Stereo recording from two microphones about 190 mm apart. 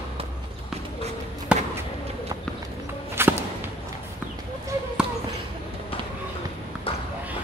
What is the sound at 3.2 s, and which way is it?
Whip, 10° right (ahead or behind).